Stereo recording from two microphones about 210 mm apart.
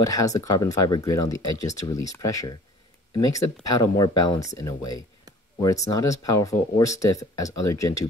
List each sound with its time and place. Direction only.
0.0 s speech: 15° left (ahead or behind)